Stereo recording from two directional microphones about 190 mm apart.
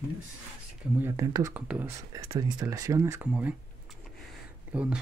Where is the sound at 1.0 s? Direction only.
15° right (ahead or behind).